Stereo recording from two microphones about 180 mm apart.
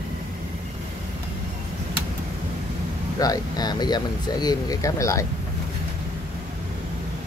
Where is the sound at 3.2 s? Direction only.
20° left (ahead or behind).